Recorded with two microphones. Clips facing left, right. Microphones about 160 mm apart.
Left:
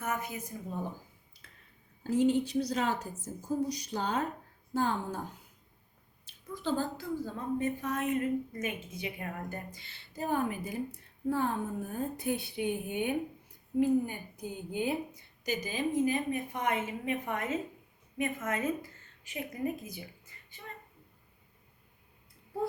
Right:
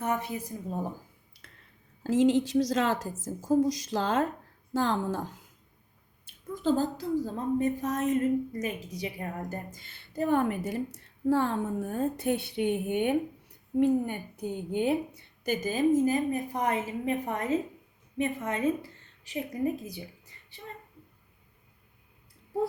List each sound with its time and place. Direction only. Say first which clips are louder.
0.0 s a woman's voice: right 5 dB; 30° right (ahead or behind)
1.4 s a sound: right 4 dB; 70° right (ahead or behind)
2.0 s a woman's voice: right 4 dB; 90° right
6.2 s a woman's voice: right 7 dB; 45° right (ahead or behind)